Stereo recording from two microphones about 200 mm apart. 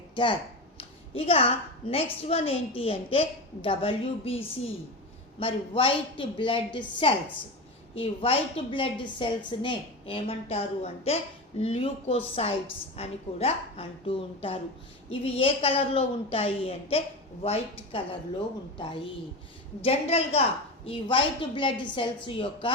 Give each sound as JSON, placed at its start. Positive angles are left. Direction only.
{"t": 0.2, "sound": "a woman's voice", "side_deg": 25}